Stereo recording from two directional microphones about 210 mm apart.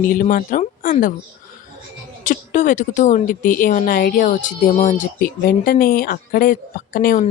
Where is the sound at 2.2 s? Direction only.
40° left (ahead or behind).